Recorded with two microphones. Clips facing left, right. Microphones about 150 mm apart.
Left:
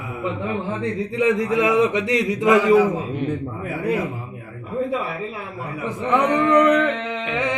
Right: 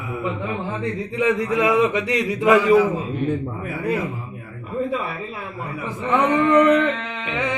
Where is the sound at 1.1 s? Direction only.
20° left (ahead or behind).